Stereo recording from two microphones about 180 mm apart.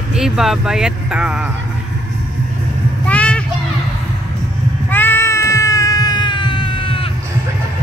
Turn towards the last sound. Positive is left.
turn(degrees=30)  # may be behind; listen again after turning